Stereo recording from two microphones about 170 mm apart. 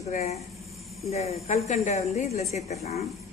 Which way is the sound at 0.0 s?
40° left (ahead or behind).